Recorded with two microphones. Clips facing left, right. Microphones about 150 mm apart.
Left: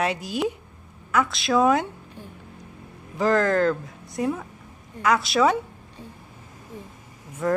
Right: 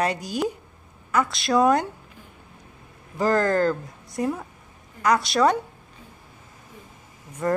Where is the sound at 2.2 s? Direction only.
35° left (ahead or behind).